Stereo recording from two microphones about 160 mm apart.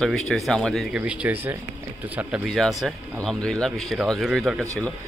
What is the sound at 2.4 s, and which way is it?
Speech, centre (ahead or behind).